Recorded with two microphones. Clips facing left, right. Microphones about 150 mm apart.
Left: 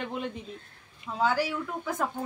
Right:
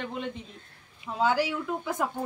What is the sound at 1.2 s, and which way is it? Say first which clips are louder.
Speech: right 1 dB; 15° right (ahead or behind).